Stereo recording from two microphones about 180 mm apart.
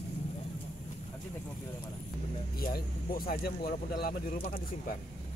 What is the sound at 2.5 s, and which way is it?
Speech, 60° left (ahead or behind).